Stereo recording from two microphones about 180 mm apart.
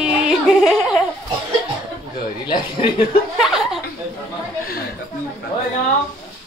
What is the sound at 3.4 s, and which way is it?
Chuckle, centre (ahead or behind).